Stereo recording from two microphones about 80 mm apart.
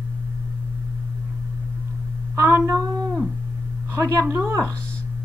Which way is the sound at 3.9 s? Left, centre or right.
Right.